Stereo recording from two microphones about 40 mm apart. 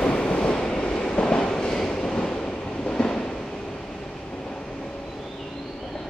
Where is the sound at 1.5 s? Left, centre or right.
Centre.